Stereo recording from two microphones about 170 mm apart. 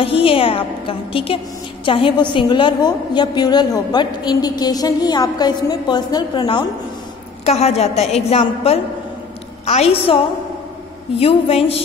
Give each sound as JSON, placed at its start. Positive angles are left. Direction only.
{"t": 0.0, "sound": "a woman's voice", "side_deg": 35}
{"t": 7.4, "sound": "a woman's voice", "side_deg": 40}
{"t": 11.1, "sound": "a woman's voice", "side_deg": 35}